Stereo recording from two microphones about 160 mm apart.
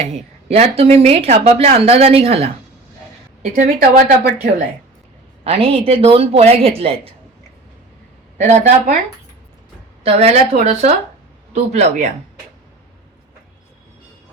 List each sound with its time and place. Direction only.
0.0 s speech: 40° right (ahead or behind)
3.5 s speech: 60° right (ahead or behind)
5.4 s speech: 40° right (ahead or behind)
8.4 s speech: 50° right (ahead or behind)
10.0 s speech: 40° right (ahead or behind)